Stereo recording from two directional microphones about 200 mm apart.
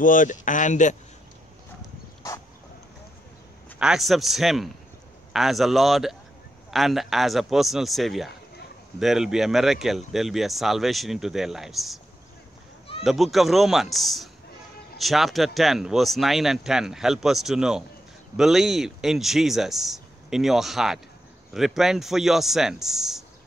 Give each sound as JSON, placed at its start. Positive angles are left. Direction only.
{"t": 0.0, "sound": "speech", "side_deg": 40}
{"t": 3.8, "sound": "speech", "side_deg": 0}
{"t": 13.0, "sound": "speech", "side_deg": 0}